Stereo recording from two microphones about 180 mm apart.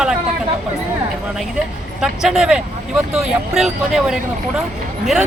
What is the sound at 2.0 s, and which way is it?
Speech, 5° right (ahead or behind).